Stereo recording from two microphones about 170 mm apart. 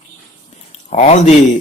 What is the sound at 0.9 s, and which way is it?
Speech, 40° left (ahead or behind).